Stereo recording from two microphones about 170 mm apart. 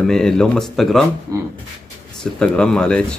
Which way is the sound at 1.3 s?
20° right (ahead or behind).